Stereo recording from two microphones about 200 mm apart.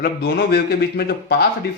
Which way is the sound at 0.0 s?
55° left (ahead or behind).